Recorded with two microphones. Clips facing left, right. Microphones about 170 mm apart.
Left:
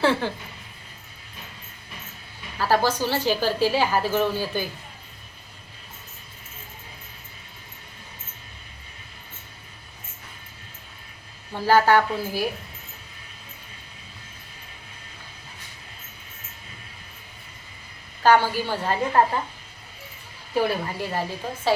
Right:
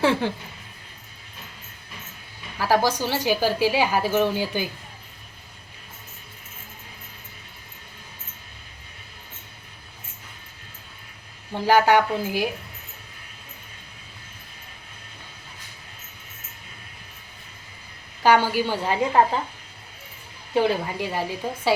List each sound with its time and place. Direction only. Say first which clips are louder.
0.0 s a woman's voice: right 1 dB; 15° right (ahead or behind)
2.6 s a woman's voice: even; 15° right (ahead or behind)
11.5 s a woman's voice: even; 15° right (ahead or behind)
18.2 s a woman's voice: even; 15° right (ahead or behind)
20.5 s a woman's voice: right 2 dB; 20° right (ahead or behind)